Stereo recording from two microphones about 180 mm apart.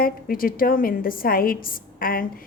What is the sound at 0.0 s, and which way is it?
A woman's voice, 55° left (ahead or behind).